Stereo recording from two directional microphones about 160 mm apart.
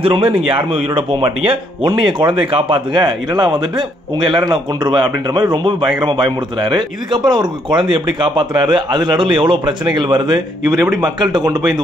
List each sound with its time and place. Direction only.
0.0 s speech: 35° right (ahead or behind)